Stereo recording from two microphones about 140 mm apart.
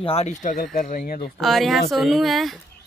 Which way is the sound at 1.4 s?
Centre (ahead or behind).